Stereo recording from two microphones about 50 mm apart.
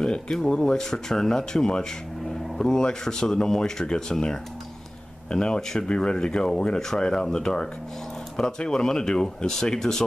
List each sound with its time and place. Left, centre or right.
0.0 s speech: centre